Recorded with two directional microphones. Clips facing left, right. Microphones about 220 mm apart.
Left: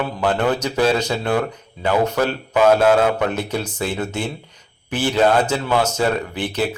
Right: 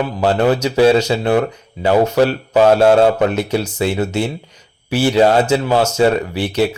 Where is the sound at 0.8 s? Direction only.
25° right (ahead or behind).